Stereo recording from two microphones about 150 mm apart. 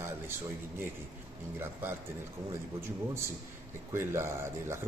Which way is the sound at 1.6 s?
15° right (ahead or behind).